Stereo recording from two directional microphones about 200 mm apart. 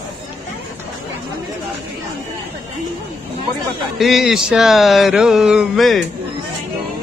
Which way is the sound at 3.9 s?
Centre (ahead or behind).